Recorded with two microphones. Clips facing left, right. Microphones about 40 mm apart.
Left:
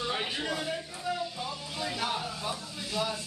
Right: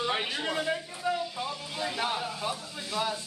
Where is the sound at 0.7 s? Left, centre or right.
Centre.